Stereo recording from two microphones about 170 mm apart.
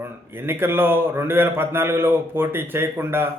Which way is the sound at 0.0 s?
15° right (ahead or behind).